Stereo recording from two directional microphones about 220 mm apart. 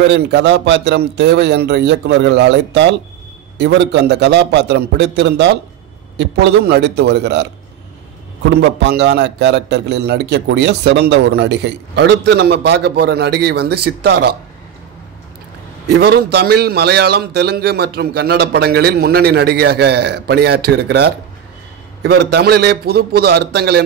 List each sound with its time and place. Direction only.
0.1 s a man's voice: 50° right (ahead or behind)
15.9 s a man's voice: 45° right (ahead or behind)